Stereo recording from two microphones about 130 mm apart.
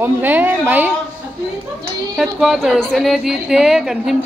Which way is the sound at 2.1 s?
5° right (ahead or behind).